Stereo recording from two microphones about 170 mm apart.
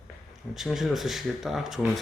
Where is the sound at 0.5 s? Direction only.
Centre (ahead or behind).